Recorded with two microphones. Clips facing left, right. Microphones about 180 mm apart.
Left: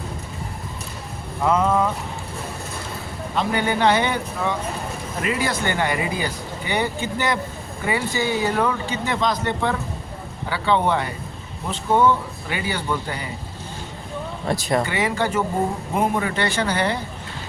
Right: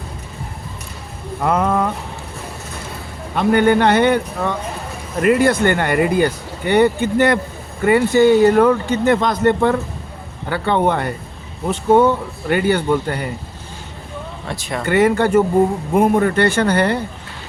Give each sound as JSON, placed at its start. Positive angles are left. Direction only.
{"t": 1.5, "sound": "speech", "side_deg": -60}
{"t": 3.3, "sound": "speech", "side_deg": -55}
{"t": 14.4, "sound": "speech", "side_deg": 40}
{"t": 14.8, "sound": "speech", "side_deg": -55}